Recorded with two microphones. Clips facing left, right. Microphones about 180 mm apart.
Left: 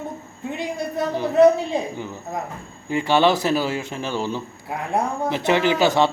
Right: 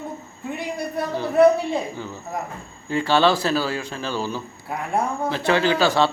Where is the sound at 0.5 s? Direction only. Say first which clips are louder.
Left 1 dB; 20° left (ahead or behind).